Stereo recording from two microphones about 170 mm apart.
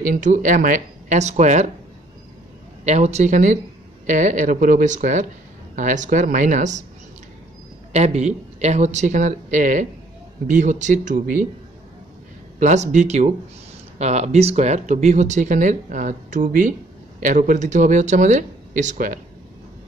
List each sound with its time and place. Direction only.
0.1 s speech: 50° right (ahead or behind)
2.8 s a man's voice: 40° right (ahead or behind)
7.9 s speech: 40° right (ahead or behind)
12.5 s speech: 45° right (ahead or behind)